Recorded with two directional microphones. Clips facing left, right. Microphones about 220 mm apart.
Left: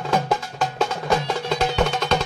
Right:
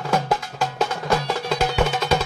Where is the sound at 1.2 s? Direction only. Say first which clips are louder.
Even; 5° right (ahead or behind).